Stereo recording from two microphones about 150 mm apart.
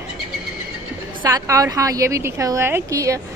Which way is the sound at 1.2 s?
20° right (ahead or behind).